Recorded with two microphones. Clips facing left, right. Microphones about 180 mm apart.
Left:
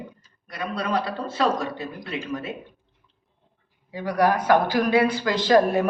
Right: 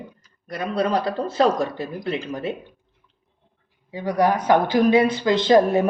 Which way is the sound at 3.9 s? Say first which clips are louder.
Right 1 dB; 20° right (ahead or behind).